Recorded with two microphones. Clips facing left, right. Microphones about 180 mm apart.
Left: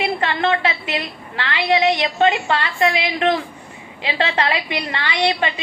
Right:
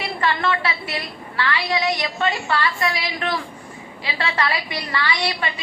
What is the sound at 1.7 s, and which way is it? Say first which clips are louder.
A woman's voice: left 10 dB; 25° left (ahead or behind).